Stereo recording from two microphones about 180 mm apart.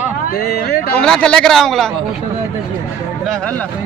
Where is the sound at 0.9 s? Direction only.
5° left (ahead or behind).